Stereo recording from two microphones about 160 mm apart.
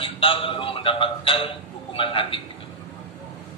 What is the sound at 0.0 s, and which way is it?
A man's voice, 35° left (ahead or behind).